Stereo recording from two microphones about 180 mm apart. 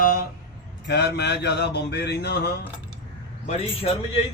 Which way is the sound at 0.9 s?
70° left (ahead or behind).